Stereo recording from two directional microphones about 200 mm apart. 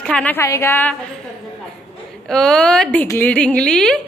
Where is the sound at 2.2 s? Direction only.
5° left (ahead or behind).